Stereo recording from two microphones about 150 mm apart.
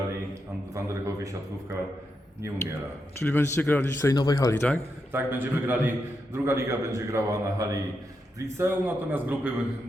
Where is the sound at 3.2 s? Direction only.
15° left (ahead or behind).